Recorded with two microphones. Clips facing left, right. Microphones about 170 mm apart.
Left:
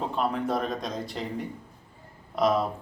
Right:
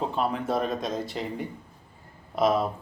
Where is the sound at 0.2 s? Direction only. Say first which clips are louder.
Even; centre (ahead or behind).